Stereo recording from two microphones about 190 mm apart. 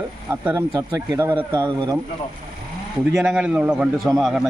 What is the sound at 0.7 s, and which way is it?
Speech, 15° right (ahead or behind).